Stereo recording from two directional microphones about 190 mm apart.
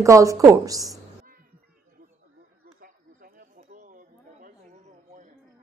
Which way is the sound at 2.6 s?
50° right (ahead or behind).